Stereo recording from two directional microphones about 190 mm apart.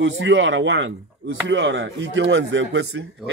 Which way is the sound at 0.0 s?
70° right (ahead or behind).